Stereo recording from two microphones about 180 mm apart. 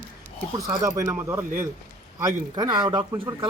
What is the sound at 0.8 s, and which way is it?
Speech, 15° right (ahead or behind).